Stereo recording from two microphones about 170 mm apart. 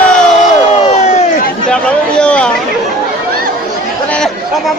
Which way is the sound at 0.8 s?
40° left (ahead or behind).